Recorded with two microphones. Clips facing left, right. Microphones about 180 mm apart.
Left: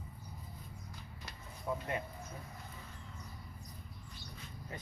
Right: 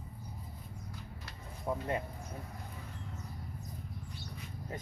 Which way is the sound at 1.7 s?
30° right (ahead or behind).